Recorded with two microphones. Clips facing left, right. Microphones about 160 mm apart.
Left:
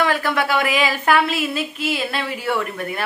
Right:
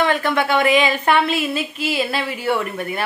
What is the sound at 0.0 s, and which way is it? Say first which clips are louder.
A woman's voice: right 1 dB; 5° left (ahead or behind).